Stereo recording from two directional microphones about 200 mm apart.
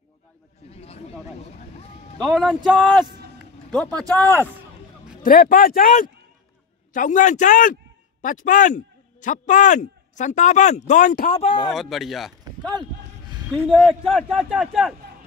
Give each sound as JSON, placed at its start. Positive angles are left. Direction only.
{"t": 0.7, "sound": "chatter", "side_deg": 30}
{"t": 2.3, "sound": "a man's voice", "side_deg": 0}
{"t": 4.1, "sound": "speech", "side_deg": 10}
{"t": 5.2, "sound": "a man's voice", "side_deg": 45}
{"t": 11.7, "sound": "a man's voice", "side_deg": 0}